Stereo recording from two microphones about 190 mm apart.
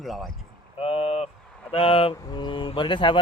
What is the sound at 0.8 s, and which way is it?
Vehicle, 30° left (ahead or behind).